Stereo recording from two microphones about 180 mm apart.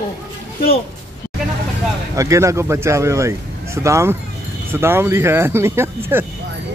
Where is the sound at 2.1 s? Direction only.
15° right (ahead or behind).